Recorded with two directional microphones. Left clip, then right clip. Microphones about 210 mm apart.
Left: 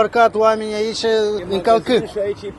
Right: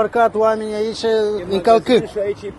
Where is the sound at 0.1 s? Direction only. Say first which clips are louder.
Left 1 dB; 5° right (ahead or behind).